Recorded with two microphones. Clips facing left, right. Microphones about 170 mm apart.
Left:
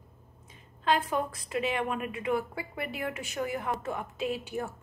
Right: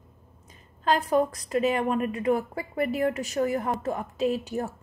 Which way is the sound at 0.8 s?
40° right (ahead or behind).